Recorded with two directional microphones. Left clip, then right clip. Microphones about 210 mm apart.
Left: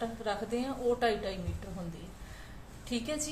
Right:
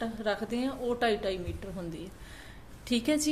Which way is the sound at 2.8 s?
50° right (ahead or behind).